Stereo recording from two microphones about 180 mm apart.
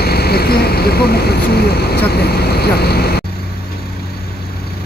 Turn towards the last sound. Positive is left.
turn(degrees=60)  # may be behind; listen again after turning